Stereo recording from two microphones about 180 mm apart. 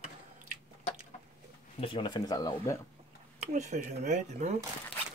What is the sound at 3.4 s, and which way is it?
Speech, 40° right (ahead or behind).